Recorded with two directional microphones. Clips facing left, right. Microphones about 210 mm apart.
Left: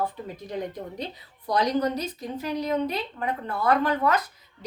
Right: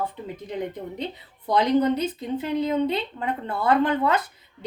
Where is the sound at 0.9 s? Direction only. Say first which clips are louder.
Right 3 dB; 25° right (ahead or behind).